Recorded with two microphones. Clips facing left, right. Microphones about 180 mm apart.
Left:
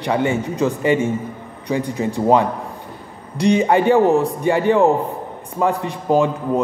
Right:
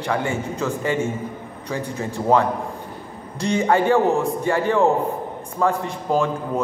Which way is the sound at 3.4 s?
15° left (ahead or behind).